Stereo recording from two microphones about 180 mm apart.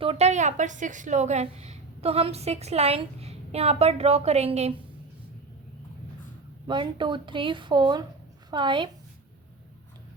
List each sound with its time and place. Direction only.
0.0 s a woman's voice: 35° right (ahead or behind)
6.7 s a woman's voice: 25° right (ahead or behind)